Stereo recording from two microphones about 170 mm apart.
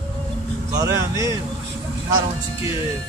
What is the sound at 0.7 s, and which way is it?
Speech, 20° right (ahead or behind).